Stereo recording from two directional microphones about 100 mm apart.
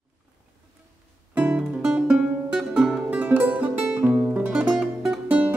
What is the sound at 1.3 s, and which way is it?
Music, 15° right (ahead or behind).